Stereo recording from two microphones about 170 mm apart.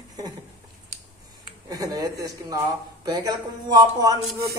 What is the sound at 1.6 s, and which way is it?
A man's voice, 20° right (ahead or behind).